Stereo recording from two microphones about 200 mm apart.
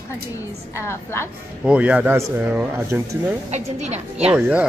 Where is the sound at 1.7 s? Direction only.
5° right (ahead or behind).